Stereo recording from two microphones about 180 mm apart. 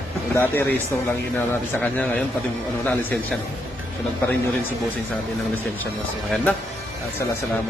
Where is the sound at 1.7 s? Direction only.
10° left (ahead or behind).